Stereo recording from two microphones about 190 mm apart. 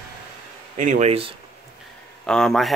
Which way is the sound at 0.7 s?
40° right (ahead or behind).